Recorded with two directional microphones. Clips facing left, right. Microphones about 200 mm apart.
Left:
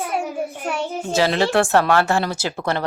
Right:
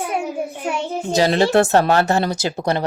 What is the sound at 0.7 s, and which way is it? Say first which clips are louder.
Speech: right 3 dB; 15° right (ahead or behind).